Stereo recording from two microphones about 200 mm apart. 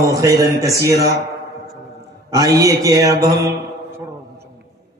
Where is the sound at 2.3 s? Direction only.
15° right (ahead or behind).